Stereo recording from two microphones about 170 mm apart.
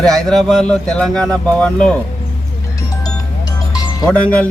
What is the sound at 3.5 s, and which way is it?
Music, 20° left (ahead or behind).